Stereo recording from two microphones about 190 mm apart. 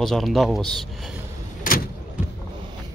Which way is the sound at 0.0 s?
Centre (ahead or behind).